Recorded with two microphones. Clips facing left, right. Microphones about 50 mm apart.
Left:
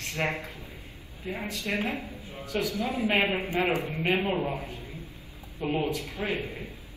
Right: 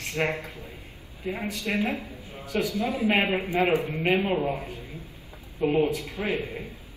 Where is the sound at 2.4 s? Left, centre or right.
Right.